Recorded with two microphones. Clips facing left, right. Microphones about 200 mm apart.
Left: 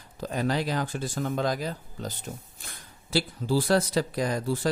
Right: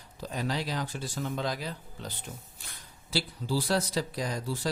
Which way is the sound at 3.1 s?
50° left (ahead or behind).